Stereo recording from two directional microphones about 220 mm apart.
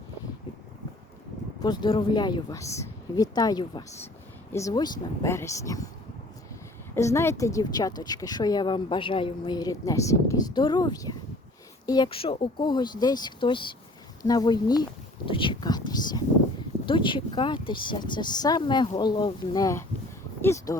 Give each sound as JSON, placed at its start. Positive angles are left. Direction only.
{"t": 1.6, "sound": "a woman's voice", "side_deg": 20}
{"t": 6.9, "sound": "a woman's voice", "side_deg": 10}